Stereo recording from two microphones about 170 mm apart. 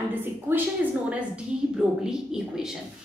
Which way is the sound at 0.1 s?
10° right (ahead or behind).